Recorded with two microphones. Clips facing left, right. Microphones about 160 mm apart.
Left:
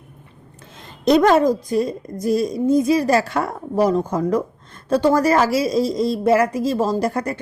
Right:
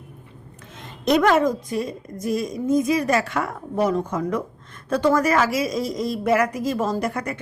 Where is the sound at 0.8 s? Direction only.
35° left (ahead or behind).